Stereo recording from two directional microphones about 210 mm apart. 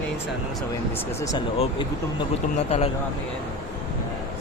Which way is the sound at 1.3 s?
20° left (ahead or behind).